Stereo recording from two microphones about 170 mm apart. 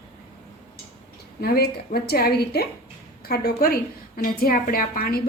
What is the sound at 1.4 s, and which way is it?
A woman's voice, 65° left (ahead or behind).